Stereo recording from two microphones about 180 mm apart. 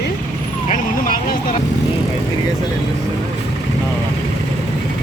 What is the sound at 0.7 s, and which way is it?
Vehicle, 50° left (ahead or behind).